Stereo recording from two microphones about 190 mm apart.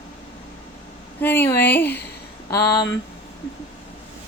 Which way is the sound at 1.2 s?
10° left (ahead or behind).